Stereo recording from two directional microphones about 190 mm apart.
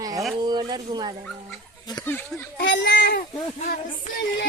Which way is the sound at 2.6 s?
65° left (ahead or behind).